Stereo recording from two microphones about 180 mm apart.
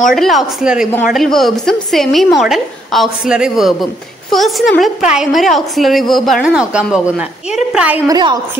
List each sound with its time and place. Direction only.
0.1 s a woman's voice: centre (ahead or behind)
8.1 s a woman's voice: 25° right (ahead or behind)